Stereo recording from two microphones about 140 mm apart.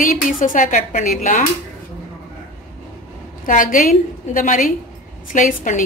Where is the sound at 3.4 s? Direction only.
70° left (ahead or behind).